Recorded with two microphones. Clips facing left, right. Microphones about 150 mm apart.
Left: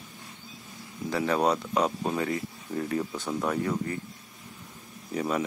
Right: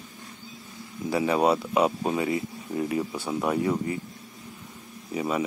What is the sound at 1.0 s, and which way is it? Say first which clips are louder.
Speech: right 3 dB; 10° right (ahead or behind).